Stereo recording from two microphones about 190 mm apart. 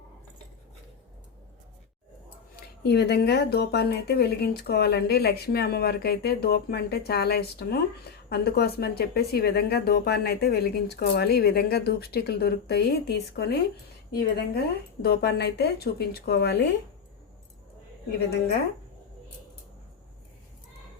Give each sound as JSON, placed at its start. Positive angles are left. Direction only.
{"t": 2.8, "sound": "speech", "side_deg": 60}